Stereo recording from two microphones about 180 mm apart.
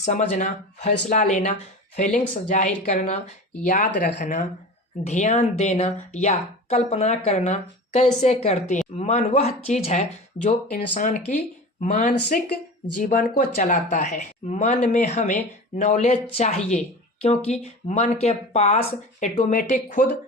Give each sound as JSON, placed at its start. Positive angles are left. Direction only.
{"t": 0.0, "sound": "speech", "side_deg": 40}
{"t": 2.0, "sound": "speech", "side_deg": 5}
{"t": 2.3, "sound": "speech", "side_deg": 45}